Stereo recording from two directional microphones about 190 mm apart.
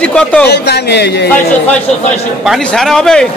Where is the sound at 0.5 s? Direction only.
60° left (ahead or behind).